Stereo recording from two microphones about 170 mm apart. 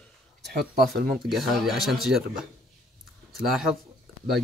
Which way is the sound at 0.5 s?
60° right (ahead or behind).